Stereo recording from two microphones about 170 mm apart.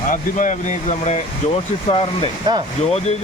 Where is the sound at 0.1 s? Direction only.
50° left (ahead or behind).